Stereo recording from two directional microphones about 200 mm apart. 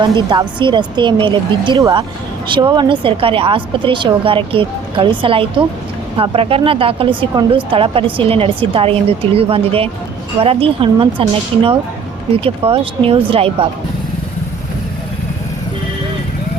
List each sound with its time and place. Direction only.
0.3 s speech: 25° right (ahead or behind)